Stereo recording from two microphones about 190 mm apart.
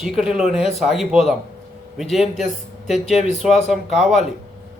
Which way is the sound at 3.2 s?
35° left (ahead or behind).